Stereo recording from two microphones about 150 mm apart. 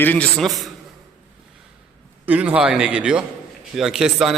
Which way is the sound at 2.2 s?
10° right (ahead or behind).